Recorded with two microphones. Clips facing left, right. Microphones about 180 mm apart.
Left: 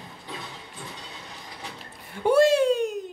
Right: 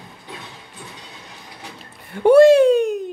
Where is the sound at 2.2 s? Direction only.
65° right (ahead or behind).